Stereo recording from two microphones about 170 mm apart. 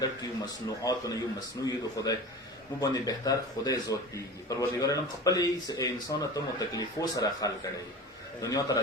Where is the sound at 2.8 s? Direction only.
20° left (ahead or behind).